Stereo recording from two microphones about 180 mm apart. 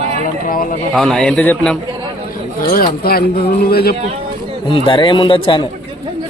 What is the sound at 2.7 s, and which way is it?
Speech, 55° left (ahead or behind).